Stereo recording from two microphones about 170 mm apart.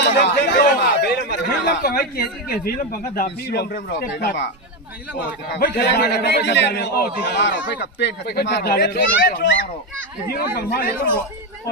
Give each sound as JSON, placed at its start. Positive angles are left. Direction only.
{"t": 0.0, "sound": "speech", "side_deg": 75}
{"t": 5.6, "sound": "a man's voice", "side_deg": 70}